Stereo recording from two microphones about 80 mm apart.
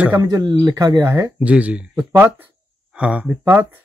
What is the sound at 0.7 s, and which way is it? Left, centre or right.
Speech, right.